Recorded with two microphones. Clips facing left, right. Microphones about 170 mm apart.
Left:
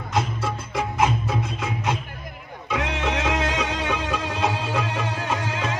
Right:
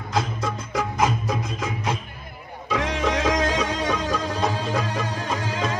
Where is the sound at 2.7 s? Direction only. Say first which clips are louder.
Right 2 dB; 35° right (ahead or behind).